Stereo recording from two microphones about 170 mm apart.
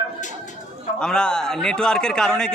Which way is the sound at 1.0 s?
5° left (ahead or behind).